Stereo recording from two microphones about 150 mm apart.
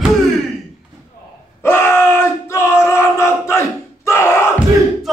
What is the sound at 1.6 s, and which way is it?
Battle cry, 15° left (ahead or behind).